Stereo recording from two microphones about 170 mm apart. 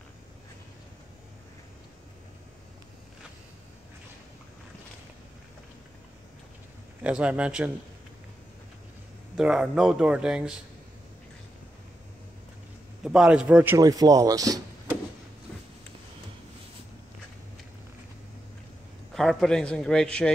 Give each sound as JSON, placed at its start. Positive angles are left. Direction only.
{"t": 7.0, "sound": "a man's voice", "side_deg": -5}
{"t": 9.4, "sound": "speech", "side_deg": -5}
{"t": 13.0, "sound": "a man's voice", "side_deg": -5}
{"t": 13.7, "sound": "speech", "side_deg": -20}
{"t": 19.1, "sound": "speech", "side_deg": 5}